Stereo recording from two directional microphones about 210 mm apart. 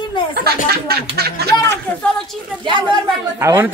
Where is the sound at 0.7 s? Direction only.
50° right (ahead or behind).